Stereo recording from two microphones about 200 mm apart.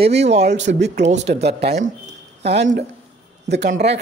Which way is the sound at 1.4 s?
55° right (ahead or behind).